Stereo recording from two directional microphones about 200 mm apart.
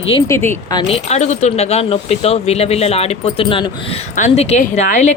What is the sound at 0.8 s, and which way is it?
Speech, 30° left (ahead or behind).